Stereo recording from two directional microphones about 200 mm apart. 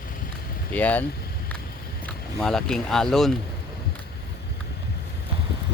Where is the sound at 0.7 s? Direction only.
5° left (ahead or behind).